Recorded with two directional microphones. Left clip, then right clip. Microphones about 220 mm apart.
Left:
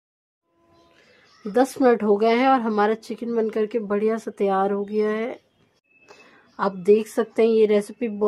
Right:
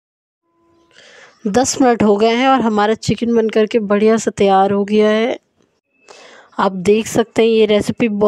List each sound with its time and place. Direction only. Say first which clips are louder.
0.9 s a woman's voice: right 15 dB; 40° right (ahead or behind)